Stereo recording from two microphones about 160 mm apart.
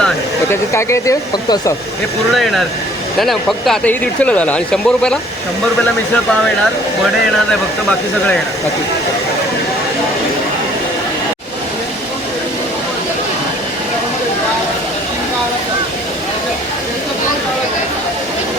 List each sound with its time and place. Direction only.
0.7 s speech: 15° left (ahead or behind)
2.3 s speech: centre (ahead or behind)